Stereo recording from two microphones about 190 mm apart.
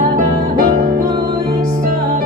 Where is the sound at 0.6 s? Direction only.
50° right (ahead or behind).